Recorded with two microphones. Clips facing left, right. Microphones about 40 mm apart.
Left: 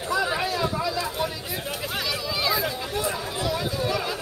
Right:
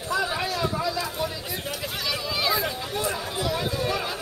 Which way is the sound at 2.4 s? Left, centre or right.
Centre.